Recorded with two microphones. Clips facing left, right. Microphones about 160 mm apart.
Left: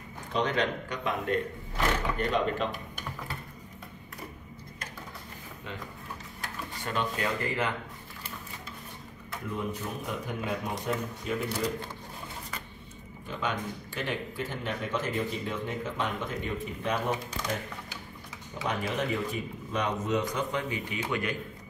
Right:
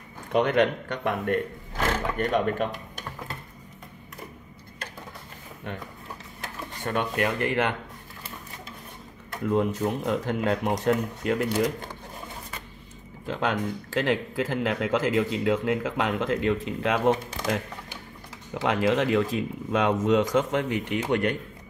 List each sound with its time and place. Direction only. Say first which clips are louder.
0.3 s speech: right 7 dB; 60° right (ahead or behind)
6.8 s speech: right 5 dB; 55° right (ahead or behind)
9.5 s speech: right 10 dB; 90° right
13.3 s speech: right 6 dB; 90° right; by 21.4 s 70° right (ahead or behind)